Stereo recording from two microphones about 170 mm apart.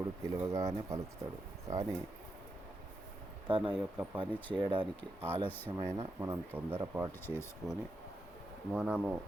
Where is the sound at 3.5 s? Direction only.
30° right (ahead or behind).